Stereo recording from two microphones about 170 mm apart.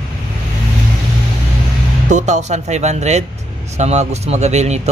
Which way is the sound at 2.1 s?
45° right (ahead or behind).